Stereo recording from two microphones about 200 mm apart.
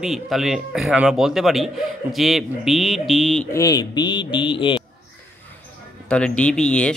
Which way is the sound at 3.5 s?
20° left (ahead or behind).